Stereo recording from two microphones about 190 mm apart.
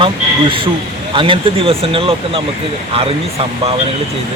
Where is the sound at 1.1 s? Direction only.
25° right (ahead or behind).